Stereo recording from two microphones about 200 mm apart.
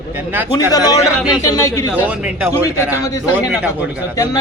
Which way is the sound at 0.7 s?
20° left (ahead or behind).